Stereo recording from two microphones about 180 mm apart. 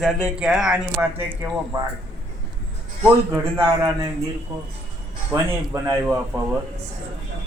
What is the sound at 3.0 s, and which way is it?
A man's voice, 15° right (ahead or behind).